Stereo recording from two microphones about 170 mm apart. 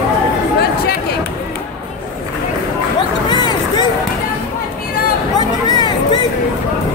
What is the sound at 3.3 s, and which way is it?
Music, 25° left (ahead or behind).